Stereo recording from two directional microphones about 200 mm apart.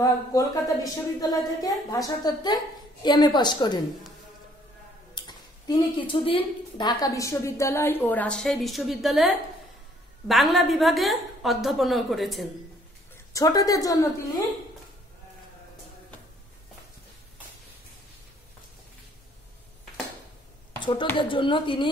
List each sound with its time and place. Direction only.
0.0 s speech: 15° left (ahead or behind)
5.1 s a woman's voice: 20° left (ahead or behind); by 12.4 s centre (ahead or behind)
13.1 s a woman's voice: 15° left (ahead or behind)
20.8 s speech: 25° left (ahead or behind)